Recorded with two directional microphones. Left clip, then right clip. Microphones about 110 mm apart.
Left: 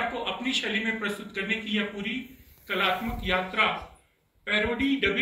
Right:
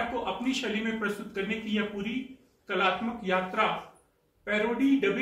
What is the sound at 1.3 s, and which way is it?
Speech, 20° right (ahead or behind).